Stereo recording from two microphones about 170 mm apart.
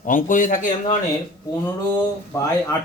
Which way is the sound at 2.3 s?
15° left (ahead or behind).